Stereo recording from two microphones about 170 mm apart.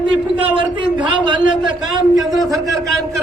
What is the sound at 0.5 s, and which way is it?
Speech, 30° right (ahead or behind).